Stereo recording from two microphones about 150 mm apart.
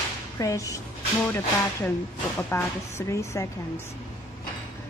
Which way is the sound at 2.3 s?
15° left (ahead or behind).